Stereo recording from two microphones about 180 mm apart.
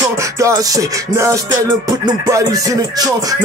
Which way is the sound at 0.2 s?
20° right (ahead or behind).